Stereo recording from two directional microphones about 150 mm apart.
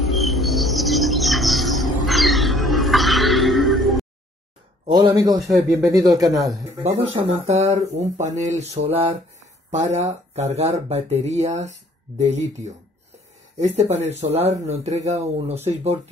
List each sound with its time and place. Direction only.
0.0 s bird: centre (ahead or behind)
4.9 s speech: 25° right (ahead or behind)
6.8 s speech: 45° right (ahead or behind)